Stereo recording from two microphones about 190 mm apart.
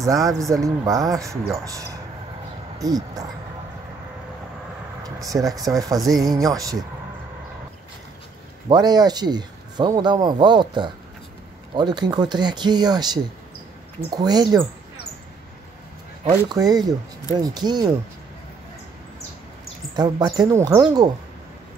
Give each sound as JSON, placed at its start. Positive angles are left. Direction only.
{"t": 0.0, "sound": "speech", "side_deg": -20}
{"t": 5.0, "sound": "vehicle", "side_deg": -20}
{"t": 5.6, "sound": "speech", "side_deg": -20}
{"t": 8.6, "sound": "speech", "side_deg": -20}
{"t": 16.3, "sound": "speech", "side_deg": -20}
{"t": 20.0, "sound": "speech", "side_deg": -20}